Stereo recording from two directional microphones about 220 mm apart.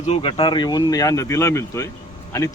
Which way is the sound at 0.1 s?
25° left (ahead or behind).